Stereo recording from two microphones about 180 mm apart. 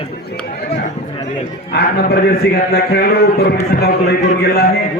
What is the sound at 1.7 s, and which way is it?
A man's voice, 60° left (ahead or behind).